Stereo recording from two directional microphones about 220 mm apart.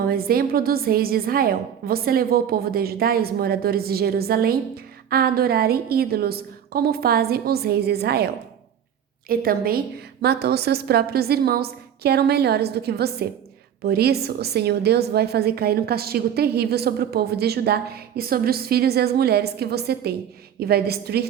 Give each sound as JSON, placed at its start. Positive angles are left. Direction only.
{"t": 0.0, "sound": "a woman's voice", "side_deg": -45}
{"t": 9.3, "sound": "a woman's voice", "side_deg": -40}